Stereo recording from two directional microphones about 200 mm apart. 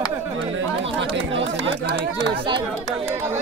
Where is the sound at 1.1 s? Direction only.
65° right (ahead or behind).